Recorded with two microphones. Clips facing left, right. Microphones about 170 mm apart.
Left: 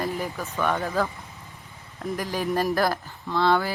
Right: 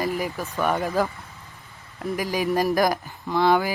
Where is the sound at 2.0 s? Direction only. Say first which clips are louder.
Right 2 dB; centre (ahead or behind).